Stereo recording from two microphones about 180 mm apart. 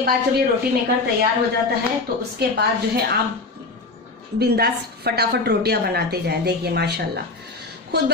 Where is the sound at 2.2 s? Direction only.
65° right (ahead or behind).